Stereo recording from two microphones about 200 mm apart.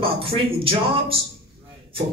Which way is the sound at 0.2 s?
25° right (ahead or behind).